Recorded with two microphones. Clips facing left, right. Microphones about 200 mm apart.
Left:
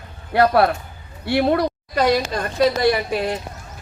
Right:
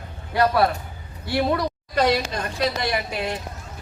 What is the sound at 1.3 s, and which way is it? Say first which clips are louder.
Speech: left 4 dB; 60° left (ahead or behind).